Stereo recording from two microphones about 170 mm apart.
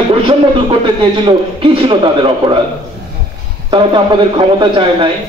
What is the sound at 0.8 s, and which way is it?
A man's voice, 30° right (ahead or behind).